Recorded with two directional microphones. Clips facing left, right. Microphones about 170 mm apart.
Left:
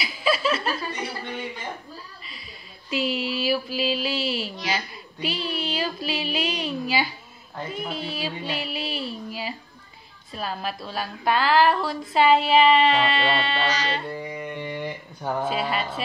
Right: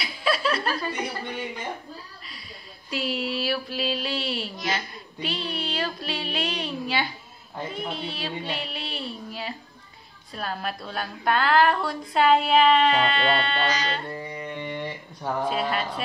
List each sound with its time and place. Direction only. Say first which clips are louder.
0.0 s chuckle: left 2 dB; 5° left (ahead or behind)
2.9 s a sound: left 2 dB; centre (ahead or behind)
13.8 s speech: left 2 dB; centre (ahead or behind)